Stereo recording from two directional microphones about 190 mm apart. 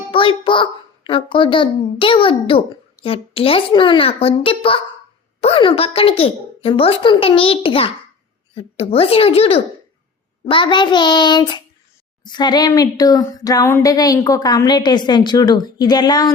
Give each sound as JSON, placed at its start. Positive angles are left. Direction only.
{"t": 0.1, "sound": "speech", "side_deg": 25}